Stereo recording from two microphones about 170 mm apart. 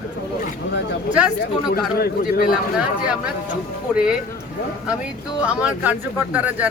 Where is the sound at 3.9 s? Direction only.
5° right (ahead or behind).